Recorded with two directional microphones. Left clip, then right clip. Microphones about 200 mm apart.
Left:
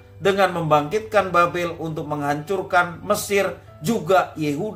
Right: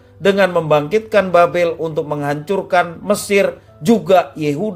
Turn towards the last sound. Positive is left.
turn(degrees=-45)  # may be behind; listen again after turning